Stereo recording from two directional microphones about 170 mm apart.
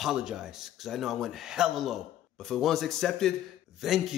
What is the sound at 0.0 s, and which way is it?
Speech, 5° right (ahead or behind).